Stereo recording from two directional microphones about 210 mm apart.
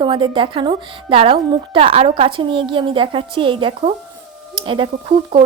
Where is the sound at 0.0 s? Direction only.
25° right (ahead or behind).